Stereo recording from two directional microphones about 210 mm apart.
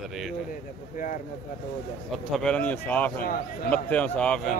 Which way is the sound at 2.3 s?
5° left (ahead or behind).